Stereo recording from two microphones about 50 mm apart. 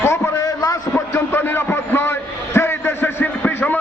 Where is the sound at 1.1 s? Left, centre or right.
Left.